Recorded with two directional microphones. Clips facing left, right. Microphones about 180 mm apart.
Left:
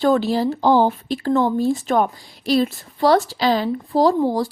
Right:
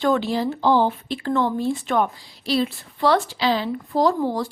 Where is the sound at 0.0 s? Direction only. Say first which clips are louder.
Left 3 dB; 35° left (ahead or behind).